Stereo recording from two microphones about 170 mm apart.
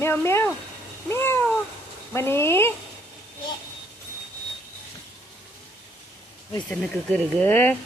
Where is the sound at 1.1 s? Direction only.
15° left (ahead or behind).